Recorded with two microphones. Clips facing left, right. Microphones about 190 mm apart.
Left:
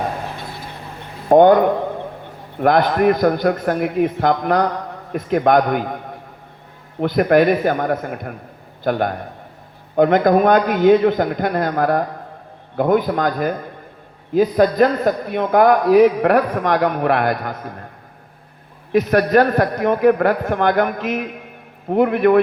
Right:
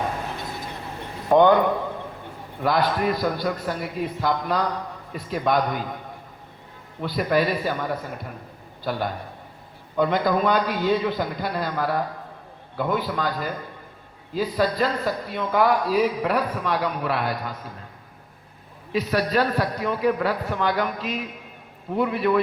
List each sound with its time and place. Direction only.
1.3 s a man's voice: 45° left (ahead or behind)
2.6 s a man's voice: 55° left (ahead or behind)
7.0 s a man's voice: 60° left (ahead or behind)
18.9 s a man's voice: 60° left (ahead or behind)